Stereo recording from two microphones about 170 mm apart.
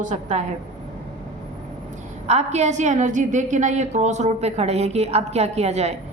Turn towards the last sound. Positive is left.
turn(degrees=-40)  # may be behind; listen again after turning